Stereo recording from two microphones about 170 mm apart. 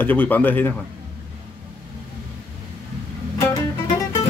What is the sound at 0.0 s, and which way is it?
Speech, 10° left (ahead or behind).